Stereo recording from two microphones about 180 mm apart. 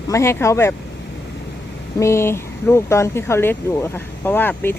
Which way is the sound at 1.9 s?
15° left (ahead or behind).